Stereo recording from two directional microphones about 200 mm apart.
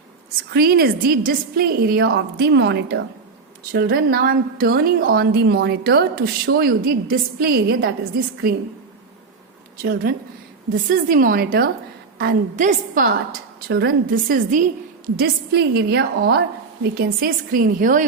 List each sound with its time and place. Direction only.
0.5 s a woman's voice: 50° right (ahead or behind)
9.7 s a woman's voice: 45° right (ahead or behind)